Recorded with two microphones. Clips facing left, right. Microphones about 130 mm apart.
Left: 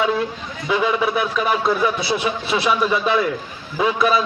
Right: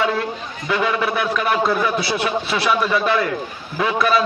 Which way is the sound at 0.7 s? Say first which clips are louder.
Left 1 dB; 5° left (ahead or behind).